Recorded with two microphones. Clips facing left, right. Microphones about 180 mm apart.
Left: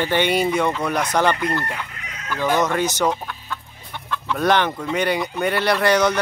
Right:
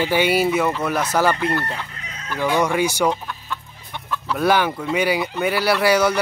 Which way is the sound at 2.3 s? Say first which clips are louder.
Even; 10° right (ahead or behind).